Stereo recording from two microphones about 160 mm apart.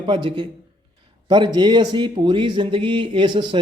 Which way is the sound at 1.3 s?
25° right (ahead or behind).